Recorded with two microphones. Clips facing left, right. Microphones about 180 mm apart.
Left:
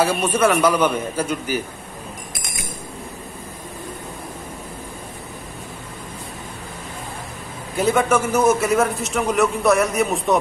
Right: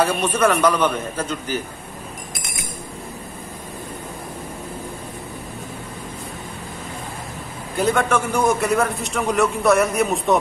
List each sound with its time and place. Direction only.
0.0 s a man's voice: 10° left (ahead or behind)
7.7 s a man's voice: 5° left (ahead or behind)